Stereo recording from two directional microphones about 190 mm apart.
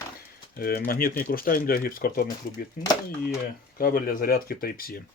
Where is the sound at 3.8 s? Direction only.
50° left (ahead or behind).